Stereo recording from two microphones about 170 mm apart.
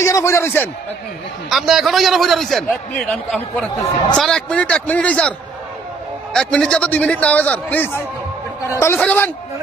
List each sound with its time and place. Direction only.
0.0 s a man's voice: 15° left (ahead or behind)
1.5 s a man's voice: centre (ahead or behind)
6.3 s a man's voice: 5° left (ahead or behind)